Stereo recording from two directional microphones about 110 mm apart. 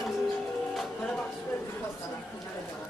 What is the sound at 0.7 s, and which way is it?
Music, 10° left (ahead or behind).